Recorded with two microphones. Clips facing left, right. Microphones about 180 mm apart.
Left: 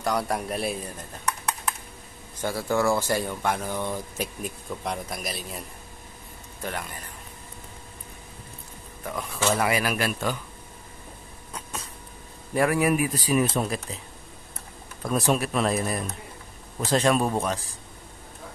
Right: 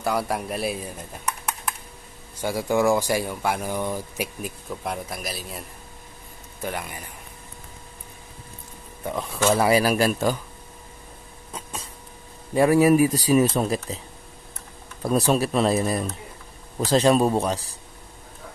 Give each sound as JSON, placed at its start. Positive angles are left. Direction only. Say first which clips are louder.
{"t": 0.0, "sound": "speech", "louder": "right 1 dB", "side_deg": -5}
{"t": 2.4, "sound": "a man's voice", "louder": "right 3 dB", "side_deg": -15}
{"t": 9.0, "sound": "speech", "louder": "right 4 dB", "side_deg": -25}
{"t": 12.5, "sound": "speech", "louder": "right 6 dB", "side_deg": -30}
{"t": 15.0, "sound": "speech", "louder": "right 3 dB", "side_deg": -35}